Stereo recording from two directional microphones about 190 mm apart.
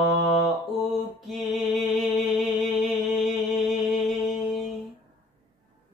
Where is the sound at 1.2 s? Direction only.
Centre (ahead or behind).